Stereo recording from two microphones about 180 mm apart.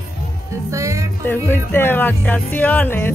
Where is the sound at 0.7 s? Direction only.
15° right (ahead or behind).